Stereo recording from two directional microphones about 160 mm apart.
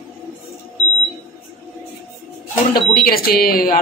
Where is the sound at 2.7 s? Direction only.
70° left (ahead or behind).